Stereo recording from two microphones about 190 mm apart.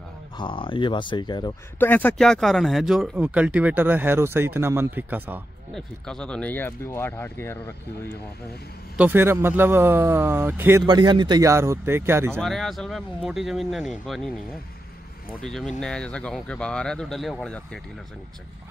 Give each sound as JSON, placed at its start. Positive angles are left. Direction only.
{"t": 0.4, "sound": "speech", "side_deg": 25}
{"t": 1.8, "sound": "speech", "side_deg": 10}
{"t": 5.8, "sound": "speech", "side_deg": 5}
{"t": 8.9, "sound": "speech", "side_deg": -10}
{"t": 11.0, "sound": "speech", "side_deg": -25}
{"t": 12.4, "sound": "speech", "side_deg": 0}
{"t": 15.4, "sound": "speech", "side_deg": 5}